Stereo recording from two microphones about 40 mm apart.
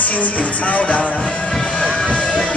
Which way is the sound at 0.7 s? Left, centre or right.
Left.